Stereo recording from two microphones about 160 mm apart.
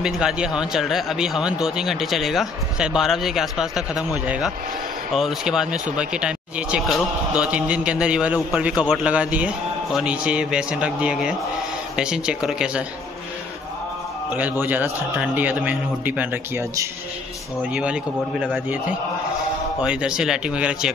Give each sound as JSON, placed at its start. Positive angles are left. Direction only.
{"t": 0.0, "sound": "a man's voice", "side_deg": -5}
{"t": 5.1, "sound": "a man's voice", "side_deg": 0}
{"t": 14.3, "sound": "a man's voice", "side_deg": -10}
{"t": 18.4, "sound": "a man's voice", "side_deg": -5}
{"t": 19.8, "sound": "a man's voice", "side_deg": -5}